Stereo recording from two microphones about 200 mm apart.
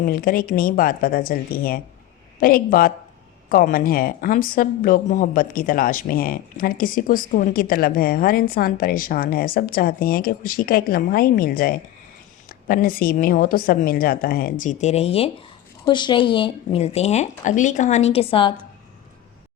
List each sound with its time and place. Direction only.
0.0 s a woman's voice: 45° left (ahead or behind); by 18.5 s 25° left (ahead or behind)